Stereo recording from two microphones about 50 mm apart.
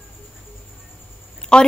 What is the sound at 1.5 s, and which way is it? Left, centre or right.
Speech, centre.